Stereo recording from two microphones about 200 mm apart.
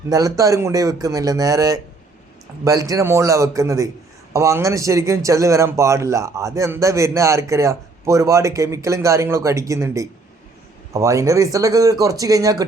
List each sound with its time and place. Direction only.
0.1 s a man's voice: 15° right (ahead or behind)